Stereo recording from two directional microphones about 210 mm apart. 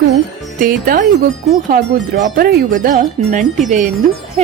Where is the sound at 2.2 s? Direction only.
45° right (ahead or behind).